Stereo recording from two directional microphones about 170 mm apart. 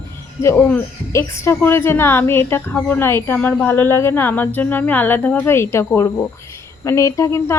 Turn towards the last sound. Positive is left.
turn(degrees=15)  # may be behind; listen again after turning